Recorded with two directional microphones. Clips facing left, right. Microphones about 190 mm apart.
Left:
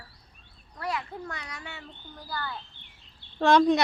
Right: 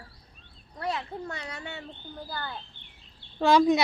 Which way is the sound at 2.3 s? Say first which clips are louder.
Left 3 dB; 25° right (ahead or behind).